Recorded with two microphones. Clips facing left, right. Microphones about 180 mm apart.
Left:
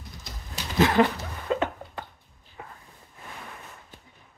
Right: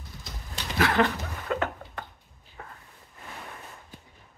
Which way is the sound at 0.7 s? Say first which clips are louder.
Left 3 dB; 20° left (ahead or behind).